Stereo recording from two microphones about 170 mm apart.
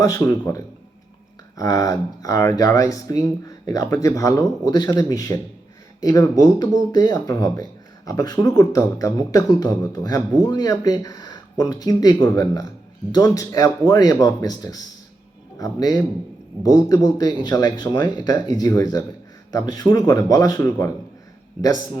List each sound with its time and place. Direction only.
0.0 s speech: 20° left (ahead or behind)
21.6 s a man's voice: 10° right (ahead or behind)